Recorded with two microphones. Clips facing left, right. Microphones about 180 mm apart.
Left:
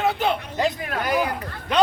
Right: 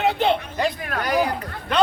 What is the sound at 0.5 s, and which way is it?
Speech, 20° left (ahead or behind).